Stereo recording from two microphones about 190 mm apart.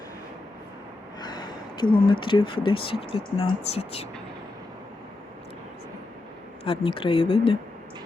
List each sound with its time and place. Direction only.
1.2 s a sound: 20° left (ahead or behind)
2.2 s speech: 25° left (ahead or behind)
6.7 s speech: 25° left (ahead or behind)